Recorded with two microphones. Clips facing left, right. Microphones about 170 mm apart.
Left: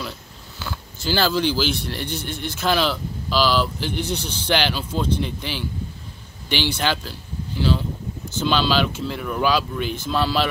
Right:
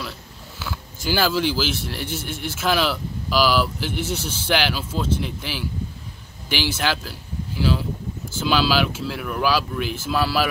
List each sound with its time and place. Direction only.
0.6 s speech: 10° right (ahead or behind)